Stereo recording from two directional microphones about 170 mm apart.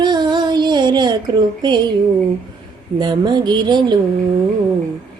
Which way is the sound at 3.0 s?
25° right (ahead or behind).